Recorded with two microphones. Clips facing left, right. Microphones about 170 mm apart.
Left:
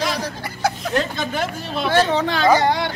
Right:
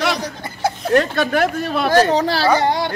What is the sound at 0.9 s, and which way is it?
Speech, 65° right (ahead or behind).